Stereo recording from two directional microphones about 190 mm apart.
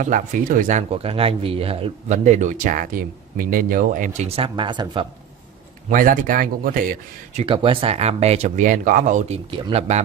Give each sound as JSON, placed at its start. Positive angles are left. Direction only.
{"t": 0.0, "sound": "speech", "side_deg": -40}
{"t": 4.4, "sound": "speech", "side_deg": -25}
{"t": 5.9, "sound": "speech", "side_deg": -45}
{"t": 7.4, "sound": "speech", "side_deg": -30}
{"t": 9.5, "sound": "speech", "side_deg": -30}